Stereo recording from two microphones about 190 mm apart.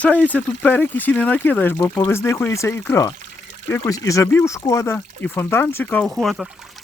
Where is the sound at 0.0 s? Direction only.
10° left (ahead or behind).